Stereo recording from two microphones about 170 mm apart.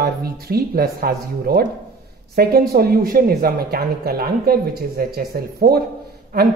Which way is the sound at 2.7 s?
60° right (ahead or behind).